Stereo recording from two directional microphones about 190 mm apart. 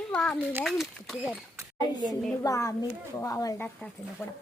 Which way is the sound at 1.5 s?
20° right (ahead or behind).